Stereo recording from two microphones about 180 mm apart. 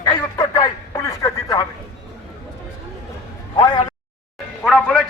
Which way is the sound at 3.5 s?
25° left (ahead or behind).